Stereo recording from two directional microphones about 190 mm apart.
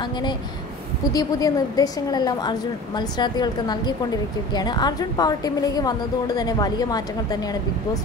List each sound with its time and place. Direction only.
0.0 s a woman's voice: 25° left (ahead or behind)